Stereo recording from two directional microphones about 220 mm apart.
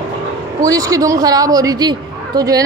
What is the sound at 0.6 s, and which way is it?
A woman's voice, 15° right (ahead or behind).